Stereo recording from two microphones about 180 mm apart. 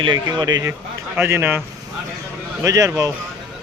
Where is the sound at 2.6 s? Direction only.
20° right (ahead or behind).